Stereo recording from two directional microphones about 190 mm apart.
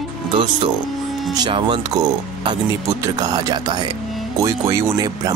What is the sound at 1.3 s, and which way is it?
Speech, 20° right (ahead or behind).